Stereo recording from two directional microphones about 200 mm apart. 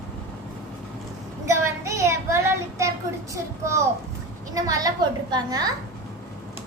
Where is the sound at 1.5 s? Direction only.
15° right (ahead or behind).